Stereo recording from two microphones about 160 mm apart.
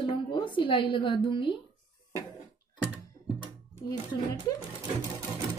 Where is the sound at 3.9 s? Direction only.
25° left (ahead or behind).